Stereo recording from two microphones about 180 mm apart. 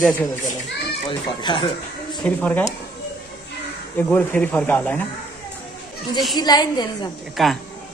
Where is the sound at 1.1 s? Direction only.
25° left (ahead or behind).